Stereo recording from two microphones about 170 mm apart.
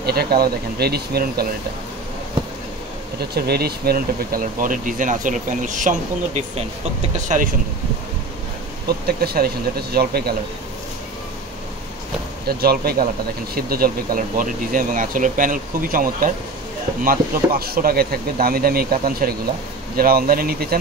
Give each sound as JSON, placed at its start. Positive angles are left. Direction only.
{"t": 0.0, "sound": "speech", "side_deg": -65}
{"t": 3.2, "sound": "speech", "side_deg": -70}
{"t": 8.8, "sound": "speech", "side_deg": -65}
{"t": 12.4, "sound": "speech", "side_deg": -65}